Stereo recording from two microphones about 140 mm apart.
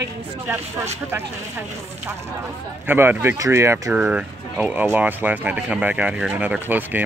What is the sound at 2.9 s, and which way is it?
Speech, 15° right (ahead or behind).